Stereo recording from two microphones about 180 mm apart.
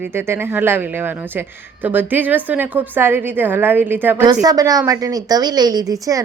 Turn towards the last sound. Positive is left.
turn(degrees=-20)  # may be behind; listen again after turning